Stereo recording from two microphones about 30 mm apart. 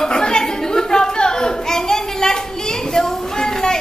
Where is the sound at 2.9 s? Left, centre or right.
Centre.